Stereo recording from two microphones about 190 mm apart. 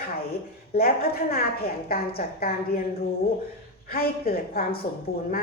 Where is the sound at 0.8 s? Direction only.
55° left (ahead or behind).